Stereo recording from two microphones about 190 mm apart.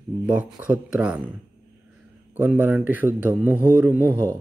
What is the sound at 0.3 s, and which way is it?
Speech, 5° right (ahead or behind).